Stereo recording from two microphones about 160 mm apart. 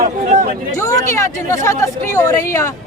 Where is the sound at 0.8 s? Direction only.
20° left (ahead or behind).